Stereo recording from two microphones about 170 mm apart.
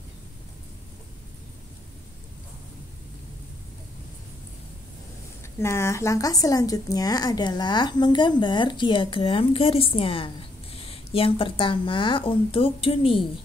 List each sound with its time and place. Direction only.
5.6 s a woman's voice: 15° left (ahead or behind); by 13.3 s 30° left (ahead or behind)